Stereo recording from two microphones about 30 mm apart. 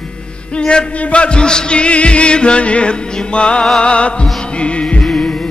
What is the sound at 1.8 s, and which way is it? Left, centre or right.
Music, left.